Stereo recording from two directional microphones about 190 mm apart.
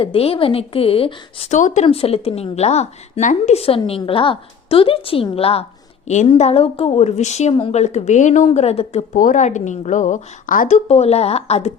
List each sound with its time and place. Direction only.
0.0 s speech: 30° left (ahead or behind)